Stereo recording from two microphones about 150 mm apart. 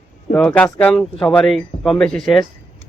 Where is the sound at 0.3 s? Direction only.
10° left (ahead or behind).